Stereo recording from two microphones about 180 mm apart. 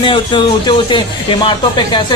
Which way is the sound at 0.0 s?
25° left (ahead or behind).